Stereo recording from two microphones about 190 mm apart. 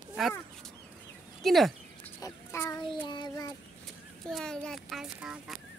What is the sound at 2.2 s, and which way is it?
Child singing, 15° left (ahead or behind).